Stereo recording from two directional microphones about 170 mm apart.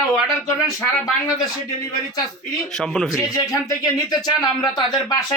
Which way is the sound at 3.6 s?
25° left (ahead or behind).